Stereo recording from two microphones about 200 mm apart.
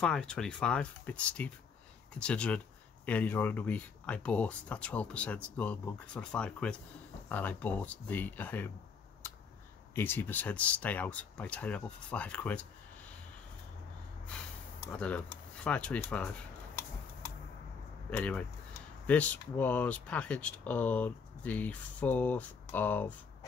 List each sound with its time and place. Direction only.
0.0 s speech: 5° left (ahead or behind)
9.9 s speech: 10° left (ahead or behind)
14.9 s speech: 5° left (ahead or behind)
18.1 s speech: 10° left (ahead or behind)